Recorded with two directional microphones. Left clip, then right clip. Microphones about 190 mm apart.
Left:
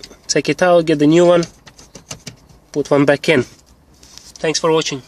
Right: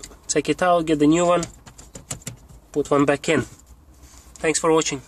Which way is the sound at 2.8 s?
40° left (ahead or behind).